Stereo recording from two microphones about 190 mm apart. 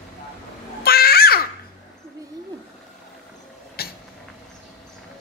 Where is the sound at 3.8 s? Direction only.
55° left (ahead or behind).